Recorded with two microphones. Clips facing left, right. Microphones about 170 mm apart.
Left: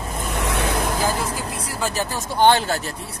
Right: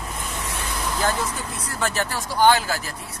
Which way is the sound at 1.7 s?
15° left (ahead or behind).